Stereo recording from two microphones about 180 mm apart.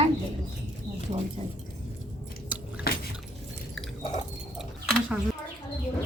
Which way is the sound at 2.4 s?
10° right (ahead or behind).